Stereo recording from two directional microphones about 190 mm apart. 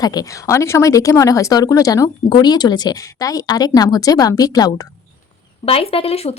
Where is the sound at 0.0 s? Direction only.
20° left (ahead or behind).